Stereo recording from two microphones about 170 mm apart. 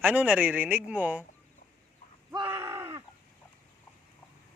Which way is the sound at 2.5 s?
15° right (ahead or behind).